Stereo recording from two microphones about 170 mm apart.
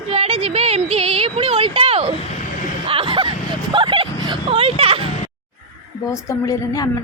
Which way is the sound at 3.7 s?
30° right (ahead or behind).